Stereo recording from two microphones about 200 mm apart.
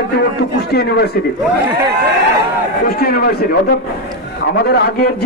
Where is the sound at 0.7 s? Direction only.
50° left (ahead or behind).